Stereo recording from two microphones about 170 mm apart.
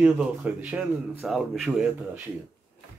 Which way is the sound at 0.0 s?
5° right (ahead or behind).